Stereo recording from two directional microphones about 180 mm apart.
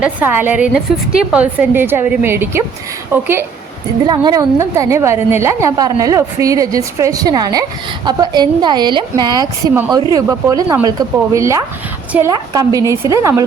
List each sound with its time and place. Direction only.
0.0 s a woman's voice: 10° right (ahead or behind)
4.0 s a woman's voice: 25° right (ahead or behind)